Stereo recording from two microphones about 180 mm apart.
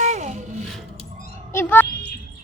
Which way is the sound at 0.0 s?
40° right (ahead or behind).